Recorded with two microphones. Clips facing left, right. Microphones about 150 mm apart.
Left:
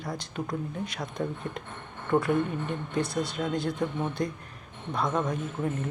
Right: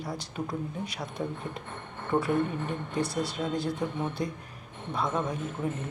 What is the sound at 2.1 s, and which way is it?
Speech, 5° left (ahead or behind).